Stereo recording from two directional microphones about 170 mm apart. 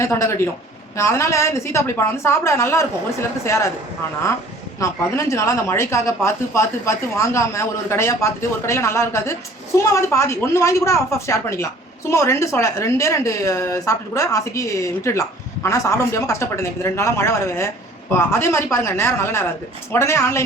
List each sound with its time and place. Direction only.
0.0 s a woman's voice: 15° left (ahead or behind)
4.8 s a woman's voice: 15° left (ahead or behind)